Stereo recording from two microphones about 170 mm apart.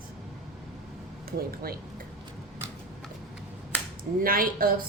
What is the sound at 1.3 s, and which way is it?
Speech, 60° right (ahead or behind).